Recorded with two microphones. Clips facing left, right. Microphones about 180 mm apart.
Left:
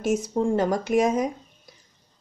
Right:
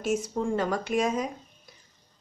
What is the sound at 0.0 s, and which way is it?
A woman's voice, 40° left (ahead or behind).